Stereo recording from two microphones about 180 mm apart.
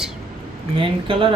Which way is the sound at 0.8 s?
30° right (ahead or behind).